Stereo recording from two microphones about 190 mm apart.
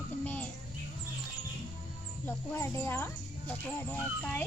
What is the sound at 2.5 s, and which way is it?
Speech, 15° left (ahead or behind).